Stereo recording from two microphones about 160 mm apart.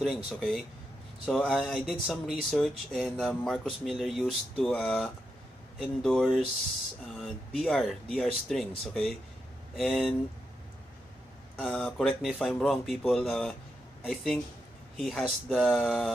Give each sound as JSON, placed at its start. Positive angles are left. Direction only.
{"t": 0.3, "sound": "speech", "side_deg": 0}
{"t": 11.5, "sound": "speech", "side_deg": 0}